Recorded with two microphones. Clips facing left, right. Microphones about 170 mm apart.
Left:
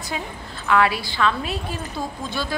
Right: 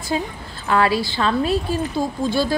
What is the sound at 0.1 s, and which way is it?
Speech, 35° right (ahead or behind).